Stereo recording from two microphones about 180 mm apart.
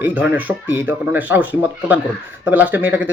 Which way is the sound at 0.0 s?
10° right (ahead or behind).